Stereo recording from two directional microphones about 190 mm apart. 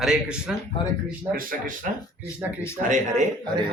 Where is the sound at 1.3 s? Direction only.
50° right (ahead or behind).